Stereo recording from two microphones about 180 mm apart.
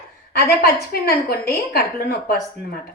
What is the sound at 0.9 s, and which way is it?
A woman's voice, 60° left (ahead or behind).